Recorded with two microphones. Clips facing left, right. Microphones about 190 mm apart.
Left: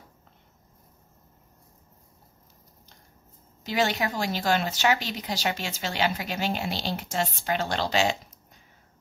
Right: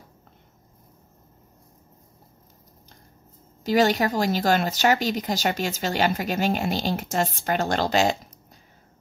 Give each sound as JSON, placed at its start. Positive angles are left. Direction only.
{"t": 3.6, "sound": "speech", "side_deg": -40}